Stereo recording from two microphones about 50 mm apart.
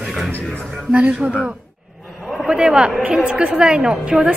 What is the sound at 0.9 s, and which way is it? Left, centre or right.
Speech, right.